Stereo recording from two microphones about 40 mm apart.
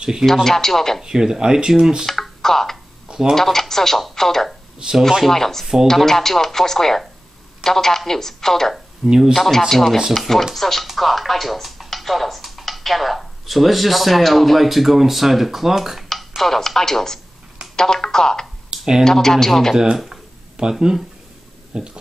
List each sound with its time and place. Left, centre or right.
0.0 s speech: centre
0.3 s speech: centre
1.0 s speech: centre
2.0 s typing: centre
3.1 s a sound: centre
3.3 s speech: centre
9.0 s speech: centre
9.3 s speech: centre
16.1 s speech: centre
18.7 s computer keyboard: centre
19.0 s speech: centre
20.1 s a sound: centre
21.7 s speech: centre